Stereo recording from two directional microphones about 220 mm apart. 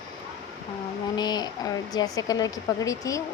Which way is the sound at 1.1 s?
20° left (ahead or behind).